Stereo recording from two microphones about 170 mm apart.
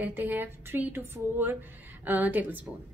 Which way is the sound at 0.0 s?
10° right (ahead or behind).